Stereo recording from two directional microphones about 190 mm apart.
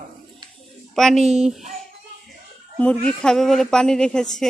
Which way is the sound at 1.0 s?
Centre (ahead or behind).